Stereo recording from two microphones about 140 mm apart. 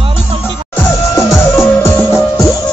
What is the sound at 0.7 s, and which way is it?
Music, 20° left (ahead or behind).